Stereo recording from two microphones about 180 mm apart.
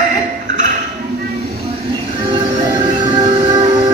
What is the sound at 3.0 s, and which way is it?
Music, 25° right (ahead or behind).